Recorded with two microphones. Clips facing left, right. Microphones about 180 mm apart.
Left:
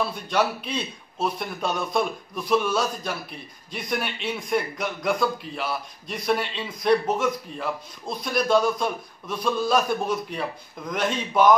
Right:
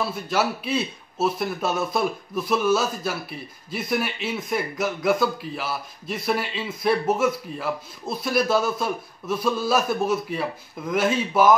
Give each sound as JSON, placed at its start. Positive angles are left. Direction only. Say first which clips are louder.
{"t": 0.1, "sound": "a man's voice", "louder": "even", "side_deg": -5}